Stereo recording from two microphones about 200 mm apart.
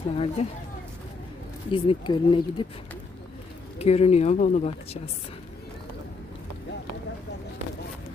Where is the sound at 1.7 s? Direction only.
25° left (ahead or behind).